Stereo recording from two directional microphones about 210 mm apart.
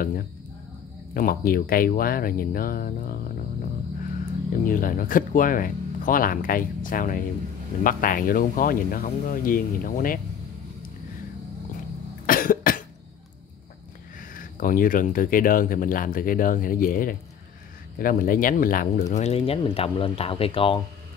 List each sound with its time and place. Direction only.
1.1 s speech: 45° left (ahead or behind)
4.6 s speech: 40° left (ahead or behind)
12.3 s cough: 40° left (ahead or behind)
14.3 s speech: 40° left (ahead or behind); by 20.8 s 25° left (ahead or behind)